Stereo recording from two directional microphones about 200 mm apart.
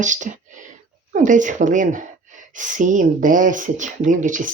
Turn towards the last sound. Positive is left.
turn(degrees=-40)  # may be behind; listen again after turning